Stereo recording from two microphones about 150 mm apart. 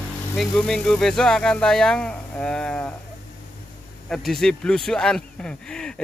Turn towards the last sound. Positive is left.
turn(degrees=5)  # may be behind; listen again after turning